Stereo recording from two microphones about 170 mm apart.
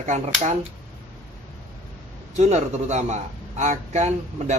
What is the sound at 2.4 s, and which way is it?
A man's voice, 40° right (ahead or behind).